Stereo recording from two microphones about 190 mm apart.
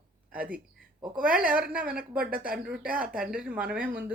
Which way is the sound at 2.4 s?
5° right (ahead or behind).